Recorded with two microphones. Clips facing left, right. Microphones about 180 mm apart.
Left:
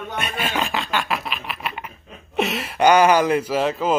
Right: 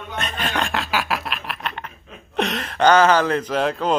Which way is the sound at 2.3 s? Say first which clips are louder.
Left 1 dB; 5° left (ahead or behind).